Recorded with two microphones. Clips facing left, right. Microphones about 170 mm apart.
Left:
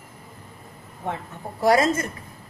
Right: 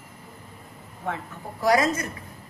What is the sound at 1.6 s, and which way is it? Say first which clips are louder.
Speech: left 2 dB; 25° left (ahead or behind).